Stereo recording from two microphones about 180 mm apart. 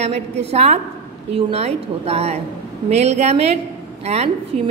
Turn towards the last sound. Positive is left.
turn(degrees=-35)  # may be behind; listen again after turning